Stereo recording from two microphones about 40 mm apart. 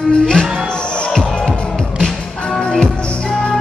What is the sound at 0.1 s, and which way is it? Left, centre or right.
Music, left.